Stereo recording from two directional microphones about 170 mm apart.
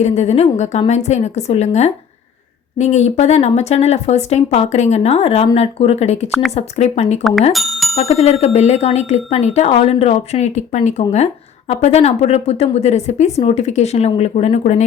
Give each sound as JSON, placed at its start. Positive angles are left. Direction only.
{"t": 0.0, "sound": "speech", "side_deg": 40}
{"t": 7.5, "sound": "speech", "side_deg": 0}
{"t": 7.9, "sound": "speech", "side_deg": 40}